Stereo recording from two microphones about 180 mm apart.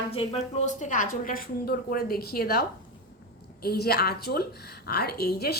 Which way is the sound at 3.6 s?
60° left (ahead or behind).